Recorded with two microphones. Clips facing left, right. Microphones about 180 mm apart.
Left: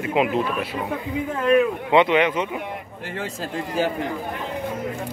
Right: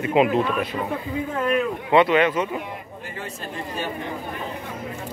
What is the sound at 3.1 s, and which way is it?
Speech, 90° left.